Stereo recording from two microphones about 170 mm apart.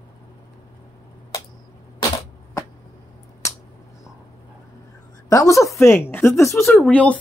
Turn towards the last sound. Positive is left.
turn(degrees=10)  # may be behind; listen again after turning